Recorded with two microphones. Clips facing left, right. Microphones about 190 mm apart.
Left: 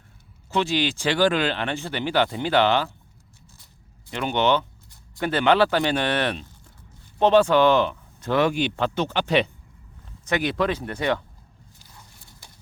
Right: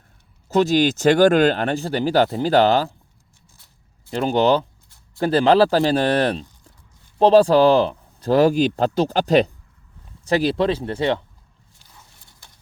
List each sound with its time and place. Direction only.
0.4 s speech: 40° right (ahead or behind)
4.1 s speech: 35° right (ahead or behind)